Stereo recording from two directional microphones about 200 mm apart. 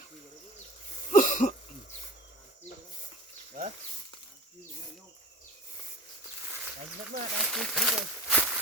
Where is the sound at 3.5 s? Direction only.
35° right (ahead or behind).